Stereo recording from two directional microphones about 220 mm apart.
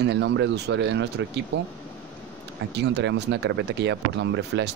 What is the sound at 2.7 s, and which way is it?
Speech, 50° right (ahead or behind).